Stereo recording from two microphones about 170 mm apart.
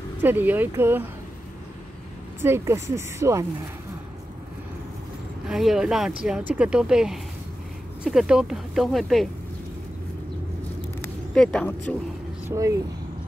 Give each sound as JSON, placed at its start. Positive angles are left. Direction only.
{"t": 0.2, "sound": "speech", "side_deg": -10}
{"t": 2.4, "sound": "speech", "side_deg": -15}
{"t": 5.5, "sound": "speech", "side_deg": 0}
{"t": 11.3, "sound": "speech", "side_deg": 5}
{"t": 12.4, "sound": "speech", "side_deg": -20}